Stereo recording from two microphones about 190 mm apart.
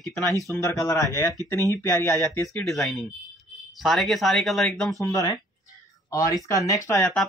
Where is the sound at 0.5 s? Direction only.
15° left (ahead or behind).